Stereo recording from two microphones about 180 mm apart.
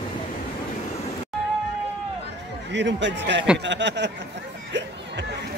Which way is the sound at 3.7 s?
75° right (ahead or behind).